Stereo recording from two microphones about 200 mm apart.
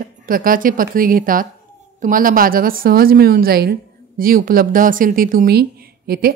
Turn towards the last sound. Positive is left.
turn(degrees=-50)  # may be behind; listen again after turning